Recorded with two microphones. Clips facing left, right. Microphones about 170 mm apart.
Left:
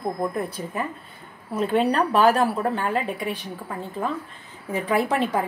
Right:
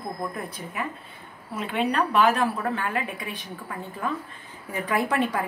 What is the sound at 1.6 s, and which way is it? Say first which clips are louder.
A woman's voice: left 4 dB; 40° left (ahead or behind).